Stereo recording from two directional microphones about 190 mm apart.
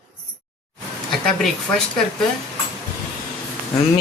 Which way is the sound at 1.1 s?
5° left (ahead or behind).